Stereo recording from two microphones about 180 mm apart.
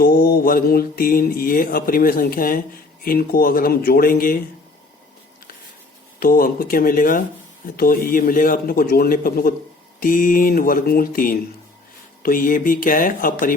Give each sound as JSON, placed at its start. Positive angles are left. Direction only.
{"t": 0.0, "sound": "mantra", "side_deg": 55}
{"t": 3.0, "sound": "speech", "side_deg": 55}
{"t": 6.1, "sound": "mantra", "side_deg": 55}